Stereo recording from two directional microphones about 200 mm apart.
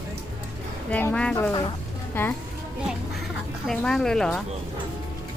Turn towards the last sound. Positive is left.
turn(degrees=0)  # may be behind; listen again after turning